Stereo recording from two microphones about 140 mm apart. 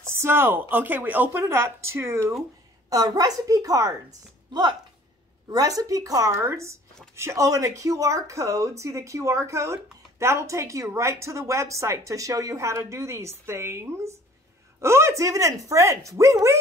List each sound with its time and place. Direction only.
0.1 s a woman's voice: 15° right (ahead or behind)